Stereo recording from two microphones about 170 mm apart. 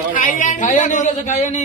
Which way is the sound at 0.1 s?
50° left (ahead or behind).